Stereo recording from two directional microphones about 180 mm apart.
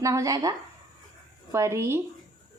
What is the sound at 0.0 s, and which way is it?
Speech, 15° right (ahead or behind).